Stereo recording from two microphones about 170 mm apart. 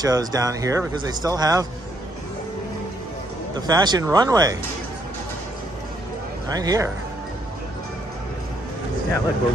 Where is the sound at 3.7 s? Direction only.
25° right (ahead or behind).